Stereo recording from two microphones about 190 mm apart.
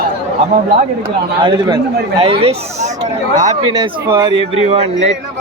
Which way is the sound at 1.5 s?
20° right (ahead or behind).